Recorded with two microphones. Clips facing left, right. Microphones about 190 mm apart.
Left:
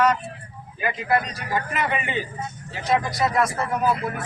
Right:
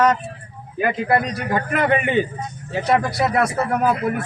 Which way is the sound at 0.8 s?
55° right (ahead or behind).